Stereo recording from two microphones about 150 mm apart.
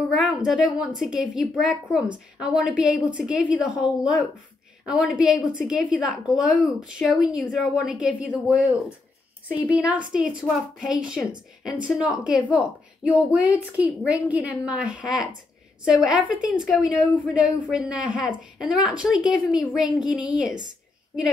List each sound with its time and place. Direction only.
0.2 s a woman's voice: centre (ahead or behind)